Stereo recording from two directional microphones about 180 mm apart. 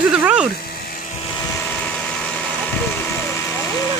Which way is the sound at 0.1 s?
5° right (ahead or behind).